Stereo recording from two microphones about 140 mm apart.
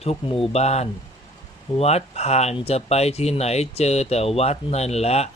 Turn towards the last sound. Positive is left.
turn(degrees=50)  # may be behind; listen again after turning